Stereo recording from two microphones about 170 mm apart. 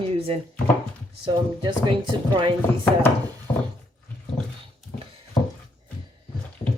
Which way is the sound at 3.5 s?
30° left (ahead or behind).